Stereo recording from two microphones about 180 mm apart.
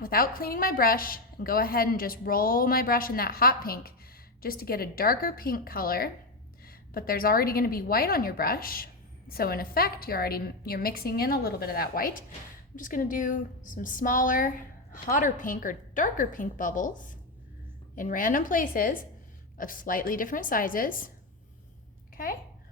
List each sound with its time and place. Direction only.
0.0 s a woman's voice: 55° left (ahead or behind)